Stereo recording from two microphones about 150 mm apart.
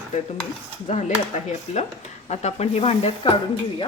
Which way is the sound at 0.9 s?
55° left (ahead or behind).